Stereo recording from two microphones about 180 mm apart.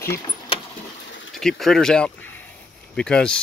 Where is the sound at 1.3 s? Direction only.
Centre (ahead or behind).